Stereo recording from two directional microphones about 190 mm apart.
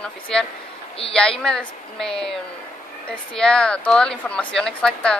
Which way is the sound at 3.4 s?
5° left (ahead or behind).